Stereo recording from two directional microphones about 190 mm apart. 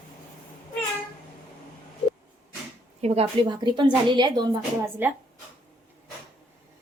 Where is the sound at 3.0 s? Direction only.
30° right (ahead or behind).